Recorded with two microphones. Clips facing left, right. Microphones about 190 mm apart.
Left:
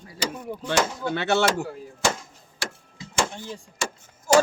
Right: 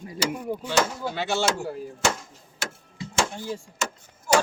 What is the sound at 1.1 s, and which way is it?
Speech, 65° left (ahead or behind).